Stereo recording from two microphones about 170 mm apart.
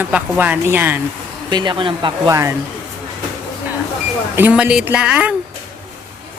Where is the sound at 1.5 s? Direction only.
25° right (ahead or behind).